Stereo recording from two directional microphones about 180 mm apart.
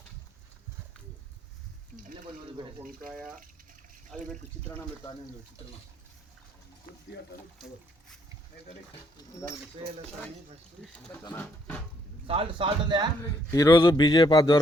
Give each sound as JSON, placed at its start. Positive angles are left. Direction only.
{"t": 3.1, "sound": "speech", "side_deg": 0}
{"t": 10.9, "sound": "speech", "side_deg": 10}
{"t": 12.3, "sound": "a man's voice", "side_deg": -30}
{"t": 13.5, "sound": "a man's voice", "side_deg": 20}